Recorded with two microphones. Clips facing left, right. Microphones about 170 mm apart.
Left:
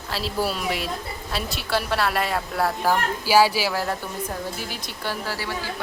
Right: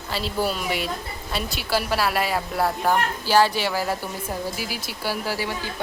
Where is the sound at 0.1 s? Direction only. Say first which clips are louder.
Right 1 dB; centre (ahead or behind).